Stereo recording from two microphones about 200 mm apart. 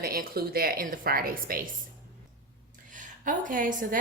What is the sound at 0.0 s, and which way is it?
A woman's voice, 50° right (ahead or behind).